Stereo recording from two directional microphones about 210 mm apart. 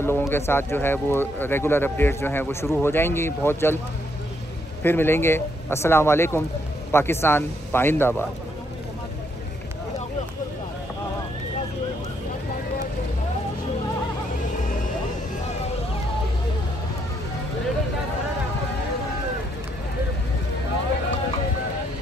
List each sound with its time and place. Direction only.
0.0 s speech: 10° left (ahead or behind)
4.8 s speech: 10° left (ahead or behind)